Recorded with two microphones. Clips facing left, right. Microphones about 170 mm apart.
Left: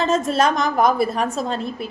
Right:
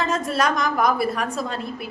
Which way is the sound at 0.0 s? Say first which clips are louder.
Left 4 dB; 25° left (ahead or behind).